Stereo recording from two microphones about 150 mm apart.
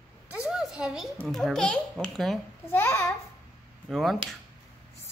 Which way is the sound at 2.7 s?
15° left (ahead or behind).